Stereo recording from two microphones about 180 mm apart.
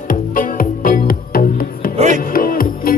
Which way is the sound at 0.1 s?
50° left (ahead or behind).